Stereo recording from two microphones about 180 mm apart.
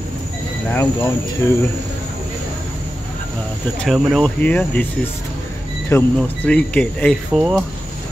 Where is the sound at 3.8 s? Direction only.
Centre (ahead or behind).